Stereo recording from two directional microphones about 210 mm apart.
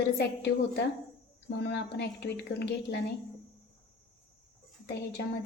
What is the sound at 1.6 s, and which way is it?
A woman's voice, 55° left (ahead or behind).